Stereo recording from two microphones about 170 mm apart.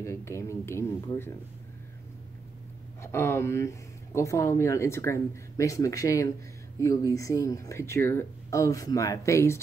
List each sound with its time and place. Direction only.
0.0 s speech: 15° left (ahead or behind)
3.0 s speech: 15° left (ahead or behind)